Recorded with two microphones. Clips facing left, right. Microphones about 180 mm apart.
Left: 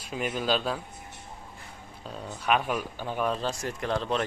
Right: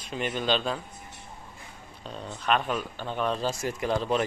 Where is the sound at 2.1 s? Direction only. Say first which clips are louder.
Even; 10° left (ahead or behind).